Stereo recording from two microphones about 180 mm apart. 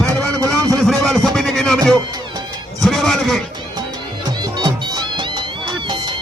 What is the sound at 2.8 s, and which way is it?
Music, centre (ahead or behind).